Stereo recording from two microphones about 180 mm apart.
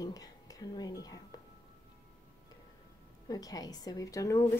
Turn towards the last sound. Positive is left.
turn(degrees=20)  # may be behind; listen again after turning